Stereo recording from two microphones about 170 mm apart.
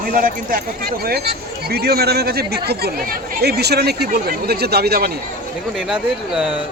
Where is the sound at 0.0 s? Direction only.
55° right (ahead or behind).